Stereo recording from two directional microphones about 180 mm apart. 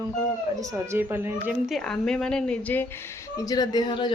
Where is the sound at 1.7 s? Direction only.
Centre (ahead or behind).